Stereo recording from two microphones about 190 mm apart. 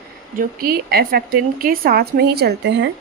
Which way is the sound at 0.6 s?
50° right (ahead or behind).